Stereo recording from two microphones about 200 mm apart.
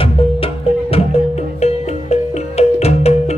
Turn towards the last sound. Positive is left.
turn(degrees=30)  # may be behind; listen again after turning